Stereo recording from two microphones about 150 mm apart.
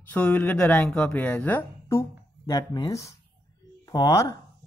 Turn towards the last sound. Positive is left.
turn(degrees=20)  # may be behind; listen again after turning